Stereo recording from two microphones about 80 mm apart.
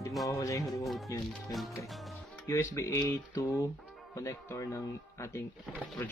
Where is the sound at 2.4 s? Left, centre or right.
Left.